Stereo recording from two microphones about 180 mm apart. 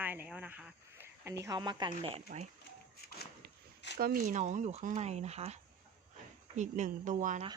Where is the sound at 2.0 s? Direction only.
35° right (ahead or behind).